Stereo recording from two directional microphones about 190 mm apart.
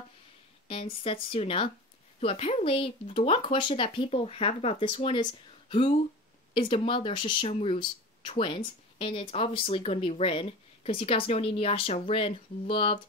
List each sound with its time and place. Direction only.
0.7 s speech: 30° left (ahead or behind)